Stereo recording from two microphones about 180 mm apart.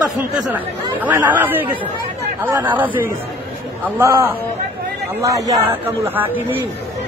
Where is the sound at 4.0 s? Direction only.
15° right (ahead or behind).